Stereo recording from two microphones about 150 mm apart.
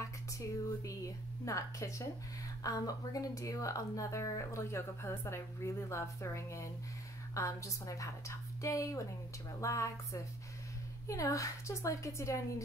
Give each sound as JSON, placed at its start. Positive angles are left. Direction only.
{"t": 0.8, "sound": "speech", "side_deg": 20}